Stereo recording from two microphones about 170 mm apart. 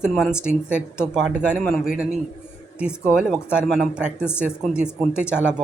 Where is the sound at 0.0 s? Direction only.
5° right (ahead or behind).